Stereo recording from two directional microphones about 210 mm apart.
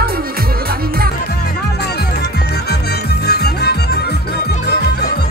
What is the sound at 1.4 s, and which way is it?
Music, 50° left (ahead or behind).